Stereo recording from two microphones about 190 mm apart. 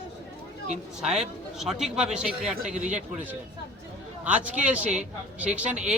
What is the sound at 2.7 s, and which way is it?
Speech, 40° right (ahead or behind).